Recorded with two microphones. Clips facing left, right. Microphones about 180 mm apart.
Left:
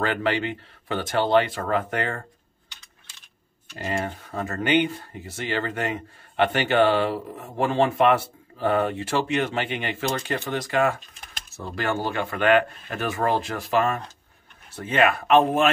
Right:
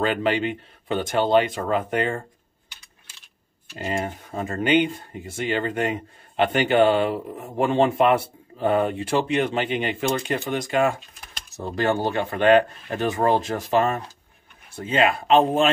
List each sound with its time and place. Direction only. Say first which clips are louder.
0.0 s speech: right 2 dB; 20° right (ahead or behind)
3.7 s speech: right 1 dB; 20° right (ahead or behind)